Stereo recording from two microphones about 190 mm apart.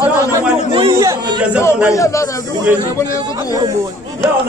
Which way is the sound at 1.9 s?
15° left (ahead or behind).